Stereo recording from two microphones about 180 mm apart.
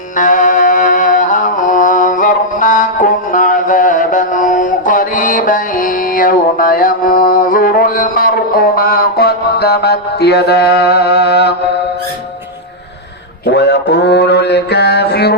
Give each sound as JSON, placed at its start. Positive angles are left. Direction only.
{"t": 0.2, "sound": "music", "side_deg": 45}
{"t": 13.5, "sound": "mantra", "side_deg": 70}